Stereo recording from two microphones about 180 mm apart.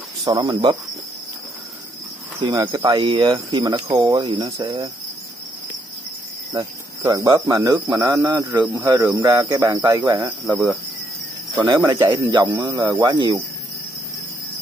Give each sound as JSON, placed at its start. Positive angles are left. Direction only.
{"t": 0.2, "sound": "speech", "side_deg": -20}
{"t": 2.4, "sound": "speech", "side_deg": -20}
{"t": 6.5, "sound": "speech", "side_deg": -25}
{"t": 8.7, "sound": "cricket", "side_deg": -15}
{"t": 11.6, "sound": "speech", "side_deg": -25}